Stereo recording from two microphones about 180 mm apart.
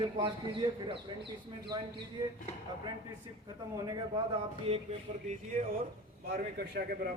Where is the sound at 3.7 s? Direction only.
25° right (ahead or behind).